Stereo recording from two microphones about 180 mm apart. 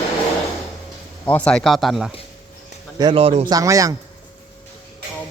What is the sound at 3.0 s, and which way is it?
Speech, 30° right (ahead or behind).